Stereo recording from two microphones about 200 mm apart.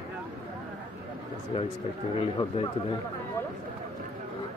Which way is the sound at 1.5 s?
25° left (ahead or behind).